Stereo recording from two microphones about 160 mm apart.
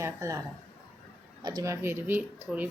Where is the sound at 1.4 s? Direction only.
20° right (ahead or behind).